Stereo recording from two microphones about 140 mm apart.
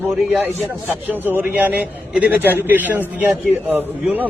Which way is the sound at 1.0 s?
15° right (ahead or behind).